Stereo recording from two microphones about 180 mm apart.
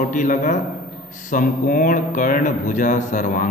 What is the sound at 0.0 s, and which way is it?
Speech, 45° left (ahead or behind).